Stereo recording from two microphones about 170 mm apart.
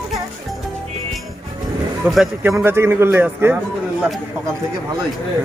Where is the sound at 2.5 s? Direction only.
15° right (ahead or behind).